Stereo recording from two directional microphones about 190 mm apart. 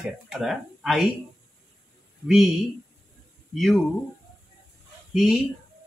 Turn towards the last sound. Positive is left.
turn(degrees=0)  # may be behind; listen again after turning